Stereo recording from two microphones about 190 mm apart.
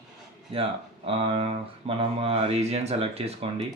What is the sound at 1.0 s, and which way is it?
Speech, 30° right (ahead or behind).